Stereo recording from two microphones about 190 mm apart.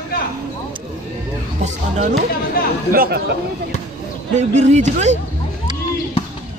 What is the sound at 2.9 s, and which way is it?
Speech, 55° right (ahead or behind).